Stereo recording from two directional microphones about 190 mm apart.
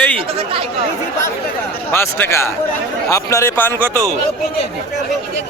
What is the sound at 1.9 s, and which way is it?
A man's voice, 10° left (ahead or behind).